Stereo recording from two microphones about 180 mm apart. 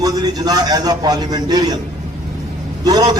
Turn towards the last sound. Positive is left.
turn(degrees=-20)  # may be behind; listen again after turning